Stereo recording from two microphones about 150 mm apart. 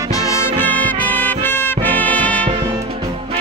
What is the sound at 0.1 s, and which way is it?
Music, 20° left (ahead or behind).